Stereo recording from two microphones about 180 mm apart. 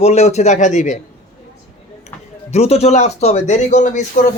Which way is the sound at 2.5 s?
35° left (ahead or behind).